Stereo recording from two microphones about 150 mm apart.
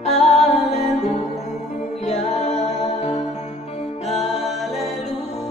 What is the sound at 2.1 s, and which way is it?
A capella, 50° left (ahead or behind).